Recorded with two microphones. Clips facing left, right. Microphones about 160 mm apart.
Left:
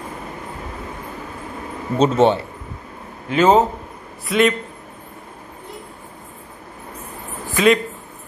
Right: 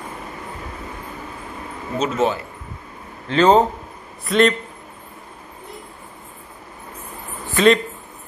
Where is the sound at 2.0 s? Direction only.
30° left (ahead or behind).